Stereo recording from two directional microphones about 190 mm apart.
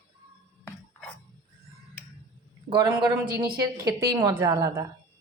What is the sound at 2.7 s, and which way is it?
A man's voice, 25° right (ahead or behind).